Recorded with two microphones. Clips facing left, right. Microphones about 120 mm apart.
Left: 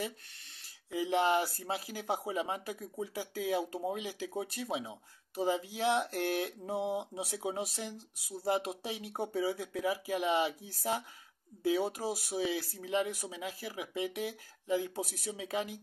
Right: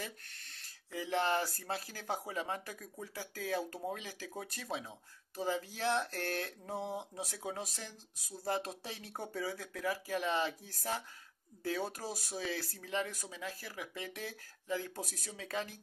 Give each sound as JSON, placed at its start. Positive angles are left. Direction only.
{"t": 0.9, "sound": "speech", "side_deg": 20}